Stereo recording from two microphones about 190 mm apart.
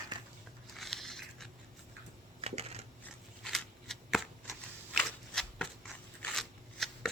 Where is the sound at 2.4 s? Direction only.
35° right (ahead or behind).